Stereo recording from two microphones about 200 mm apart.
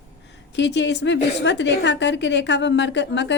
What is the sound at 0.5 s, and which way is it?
A woman's voice, 60° left (ahead or behind).